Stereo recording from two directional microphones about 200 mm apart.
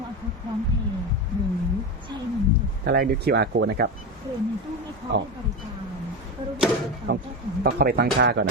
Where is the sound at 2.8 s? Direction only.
50° right (ahead or behind).